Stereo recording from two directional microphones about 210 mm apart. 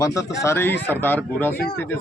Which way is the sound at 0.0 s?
15° left (ahead or behind).